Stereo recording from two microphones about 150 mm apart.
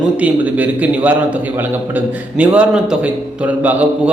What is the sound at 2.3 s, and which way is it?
Speech, 10° right (ahead or behind).